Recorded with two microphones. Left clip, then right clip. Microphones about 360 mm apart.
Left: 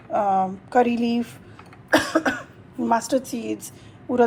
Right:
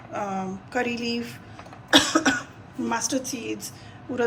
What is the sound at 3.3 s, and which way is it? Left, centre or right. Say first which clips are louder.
Speech: left 2 dB; centre.